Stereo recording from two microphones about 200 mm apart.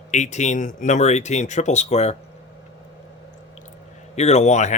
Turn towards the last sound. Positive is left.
turn(degrees=35)  # may be behind; listen again after turning